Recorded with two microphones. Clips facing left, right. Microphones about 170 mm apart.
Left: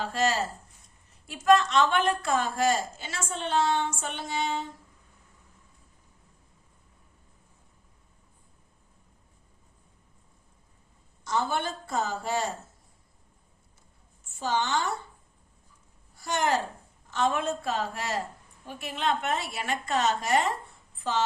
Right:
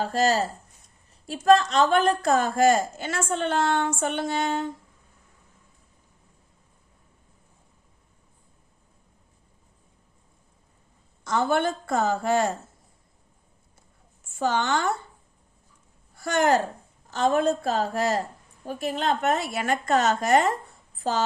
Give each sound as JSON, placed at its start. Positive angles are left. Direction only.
{"t": 0.0, "sound": "a woman's voice", "side_deg": -40}
{"t": 11.2, "sound": "a woman's voice", "side_deg": -55}
{"t": 14.3, "sound": "a woman's voice", "side_deg": -55}
{"t": 16.2, "sound": "a woman's voice", "side_deg": -50}
{"t": 17.1, "sound": "a woman's voice", "side_deg": -40}